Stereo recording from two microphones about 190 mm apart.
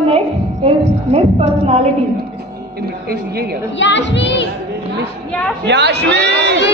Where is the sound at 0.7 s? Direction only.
35° right (ahead or behind).